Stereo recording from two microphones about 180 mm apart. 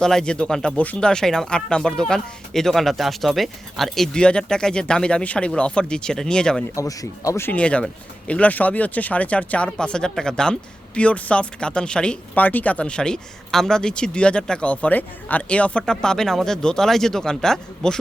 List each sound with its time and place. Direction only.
0.0 s speech: 5° left (ahead or behind)
6.7 s speech: 20° left (ahead or behind); by 17.9 s 5° left (ahead or behind)